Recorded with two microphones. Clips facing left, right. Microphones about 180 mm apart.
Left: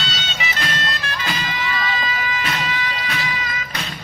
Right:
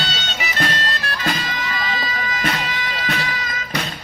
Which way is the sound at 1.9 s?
45° right (ahead or behind).